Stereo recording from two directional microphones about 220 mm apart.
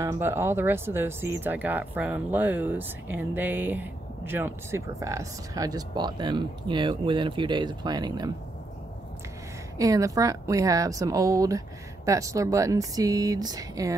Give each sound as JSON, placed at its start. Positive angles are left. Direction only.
{"t": 0.0, "sound": "speech", "side_deg": -10}
{"t": 9.8, "sound": "speech", "side_deg": -15}